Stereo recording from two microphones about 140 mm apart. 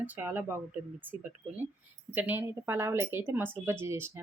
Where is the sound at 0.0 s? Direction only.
15° right (ahead or behind).